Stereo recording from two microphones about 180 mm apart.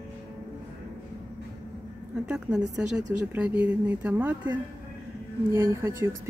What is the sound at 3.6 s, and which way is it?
A woman's voice, 5° right (ahead or behind).